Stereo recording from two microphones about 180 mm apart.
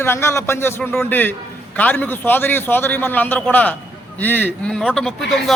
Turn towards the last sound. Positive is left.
turn(degrees=0)  # may be behind; listen again after turning